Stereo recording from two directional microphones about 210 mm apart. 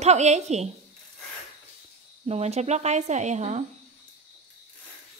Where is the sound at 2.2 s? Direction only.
30° right (ahead or behind).